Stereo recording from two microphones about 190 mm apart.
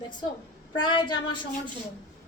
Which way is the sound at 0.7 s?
25° left (ahead or behind).